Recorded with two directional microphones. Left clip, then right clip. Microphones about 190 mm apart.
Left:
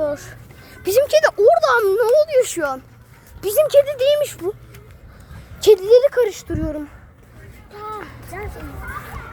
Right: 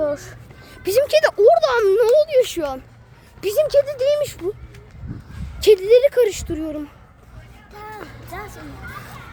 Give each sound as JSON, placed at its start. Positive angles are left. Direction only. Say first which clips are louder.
{"t": 0.0, "sound": "music", "louder": "even", "side_deg": -5}
{"t": 0.8, "sound": "speech", "louder": "left 1 dB", "side_deg": 10}
{"t": 1.2, "sound": "a sound", "louder": "even", "side_deg": -10}
{"t": 1.8, "sound": "a child's voice", "louder": "right 1 dB", "side_deg": -15}
{"t": 2.1, "sound": "speech", "louder": "even", "side_deg": 0}
{"t": 5.5, "sound": "speech", "louder": "left 1 dB", "side_deg": 0}